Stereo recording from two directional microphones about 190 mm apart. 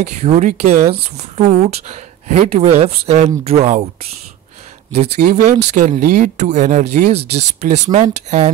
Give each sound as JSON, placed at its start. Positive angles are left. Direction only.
{"t": 0.0, "sound": "speech", "side_deg": -35}
{"t": 4.9, "sound": "speech", "side_deg": -35}